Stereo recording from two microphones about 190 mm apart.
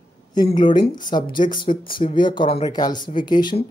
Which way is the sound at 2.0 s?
25° left (ahead or behind).